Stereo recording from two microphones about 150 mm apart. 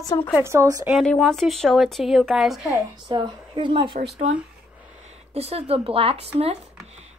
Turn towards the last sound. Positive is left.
turn(degrees=-40)  # may be behind; listen again after turning